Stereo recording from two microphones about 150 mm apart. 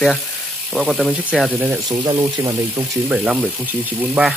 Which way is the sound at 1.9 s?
25° right (ahead or behind).